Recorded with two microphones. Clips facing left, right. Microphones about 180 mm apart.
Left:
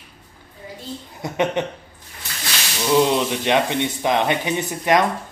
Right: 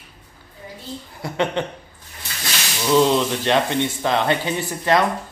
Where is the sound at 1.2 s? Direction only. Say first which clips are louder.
Left 1 dB; 20° left (ahead or behind).